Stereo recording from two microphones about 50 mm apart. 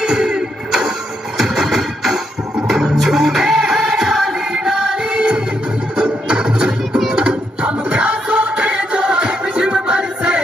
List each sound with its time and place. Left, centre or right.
0.0 s music: centre